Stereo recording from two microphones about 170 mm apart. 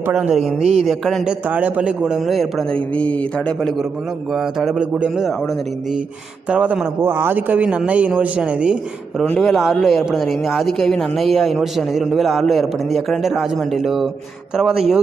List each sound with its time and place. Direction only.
0.0 s a man's voice: 10° right (ahead or behind)
0.6 s a man's voice: 40° right (ahead or behind)
0.8 s a man's voice: centre (ahead or behind)
4.6 s a man's voice: 5° right (ahead or behind)
6.5 s a man's voice: 10° right (ahead or behind)
9.2 s a man's voice: 5° left (ahead or behind)